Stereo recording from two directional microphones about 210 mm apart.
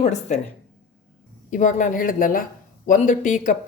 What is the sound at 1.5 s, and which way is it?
Speech, 40° left (ahead or behind).